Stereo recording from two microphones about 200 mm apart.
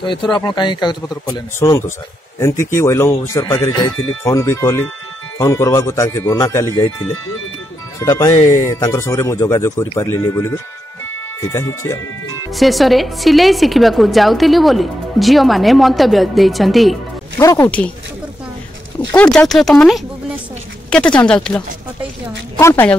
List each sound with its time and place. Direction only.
0.0 s speech: 25° left (ahead or behind)
8.0 s speech: 15° left (ahead or behind)
8.4 s speech: 40° left (ahead or behind)
8.6 s speech: 15° left (ahead or behind)
12.5 s a woman's voice: centre (ahead or behind)
17.4 s speech: 15° left (ahead or behind)
19.1 s a woman's voice: 5° left (ahead or behind)